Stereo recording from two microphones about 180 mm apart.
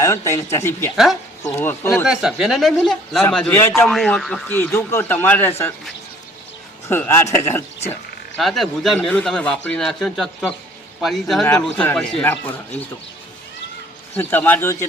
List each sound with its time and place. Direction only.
0.0 s speech: 15° left (ahead or behind)
2.0 s a man's voice: 5° right (ahead or behind); by 5.7 s 10° left (ahead or behind)
6.8 s speech: 15° left (ahead or behind)
8.4 s a man's voice: centre (ahead or behind)
14.2 s speech: 10° left (ahead or behind)